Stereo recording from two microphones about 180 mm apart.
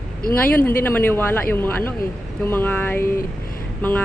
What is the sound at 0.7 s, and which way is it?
Speech, 10° left (ahead or behind).